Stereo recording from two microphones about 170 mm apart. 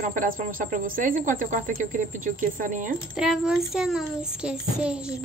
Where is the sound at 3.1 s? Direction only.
5° right (ahead or behind).